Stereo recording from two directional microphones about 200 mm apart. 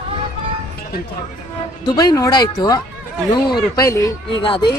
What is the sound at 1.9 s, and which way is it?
A woman's voice, 20° left (ahead or behind).